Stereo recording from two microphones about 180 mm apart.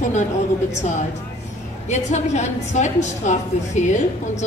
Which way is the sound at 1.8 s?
40° left (ahead or behind).